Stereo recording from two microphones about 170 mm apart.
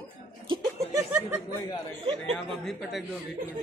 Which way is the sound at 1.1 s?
10° right (ahead or behind).